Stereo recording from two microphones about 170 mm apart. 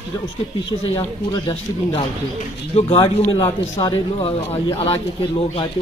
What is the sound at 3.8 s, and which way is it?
Speech, 30° left (ahead or behind).